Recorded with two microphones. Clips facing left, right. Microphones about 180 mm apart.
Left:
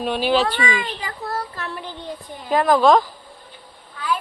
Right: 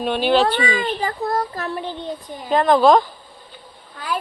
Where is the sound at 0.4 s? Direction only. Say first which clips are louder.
Right 3 dB; 40° right (ahead or behind).